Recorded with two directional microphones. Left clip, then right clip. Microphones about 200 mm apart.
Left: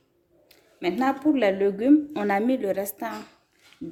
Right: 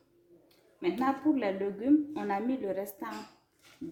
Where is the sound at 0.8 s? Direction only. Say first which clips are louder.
Left 6 dB; 55° left (ahead or behind).